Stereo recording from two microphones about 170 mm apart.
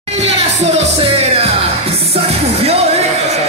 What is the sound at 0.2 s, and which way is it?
Music, 40° right (ahead or behind).